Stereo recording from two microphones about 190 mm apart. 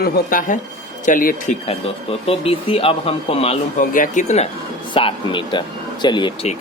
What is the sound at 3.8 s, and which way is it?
A man's voice, 45° left (ahead or behind).